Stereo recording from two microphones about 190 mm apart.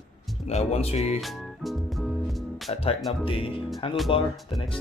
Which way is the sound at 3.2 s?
30° left (ahead or behind).